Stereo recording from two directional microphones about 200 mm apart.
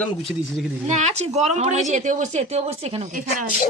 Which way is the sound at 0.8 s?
35° right (ahead or behind).